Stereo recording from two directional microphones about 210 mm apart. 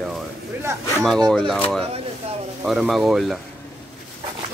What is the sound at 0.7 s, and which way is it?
Speech, 15° right (ahead or behind).